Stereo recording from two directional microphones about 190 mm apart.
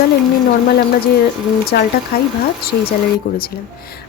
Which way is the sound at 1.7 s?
50° left (ahead or behind).